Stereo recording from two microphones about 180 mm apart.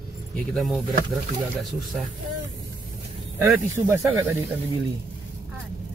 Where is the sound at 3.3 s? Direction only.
15° right (ahead or behind).